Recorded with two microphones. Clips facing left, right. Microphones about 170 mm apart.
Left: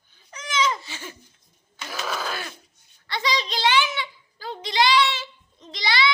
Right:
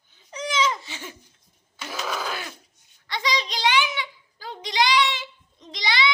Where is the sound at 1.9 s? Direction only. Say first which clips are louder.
Even; 15° right (ahead or behind).